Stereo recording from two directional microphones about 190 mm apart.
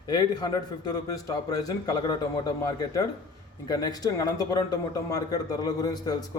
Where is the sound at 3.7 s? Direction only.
20° left (ahead or behind).